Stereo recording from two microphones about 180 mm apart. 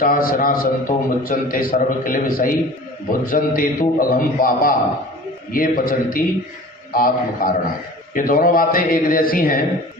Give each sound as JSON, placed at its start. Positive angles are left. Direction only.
{"t": 0.0, "sound": "a man's voice", "side_deg": 50}